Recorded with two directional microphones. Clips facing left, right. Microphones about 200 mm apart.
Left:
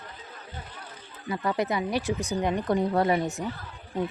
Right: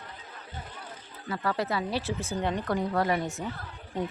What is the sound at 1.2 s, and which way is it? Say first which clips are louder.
Speech: left 3 dB; 20° left (ahead or behind).